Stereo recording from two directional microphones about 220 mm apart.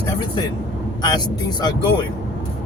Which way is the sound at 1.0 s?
20° left (ahead or behind).